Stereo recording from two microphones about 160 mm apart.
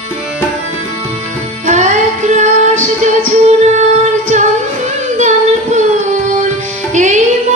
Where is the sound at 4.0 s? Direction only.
45° right (ahead or behind).